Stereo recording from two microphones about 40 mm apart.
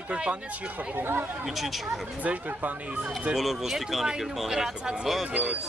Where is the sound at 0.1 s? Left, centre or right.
Right.